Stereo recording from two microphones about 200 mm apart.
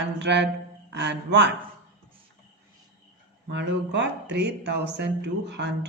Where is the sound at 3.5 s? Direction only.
60° right (ahead or behind).